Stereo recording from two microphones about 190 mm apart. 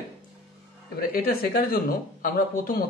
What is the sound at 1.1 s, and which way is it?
Speech, 50° left (ahead or behind).